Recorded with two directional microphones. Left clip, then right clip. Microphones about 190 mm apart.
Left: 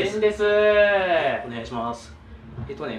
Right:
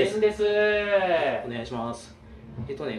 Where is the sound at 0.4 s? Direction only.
15° left (ahead or behind).